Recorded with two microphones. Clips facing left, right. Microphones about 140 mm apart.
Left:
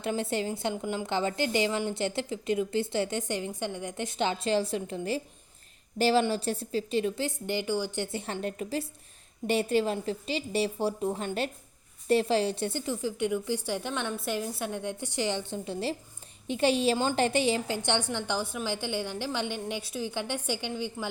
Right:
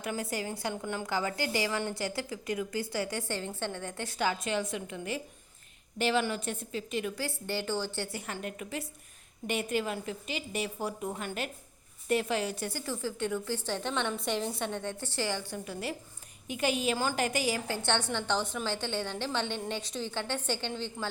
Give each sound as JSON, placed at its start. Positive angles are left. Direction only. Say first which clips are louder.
{"t": 0.0, "sound": "a woman's voice", "louder": "left 5 dB", "side_deg": 25}
{"t": 7.3, "sound": "a woman's voice", "louder": "left 3 dB", "side_deg": 15}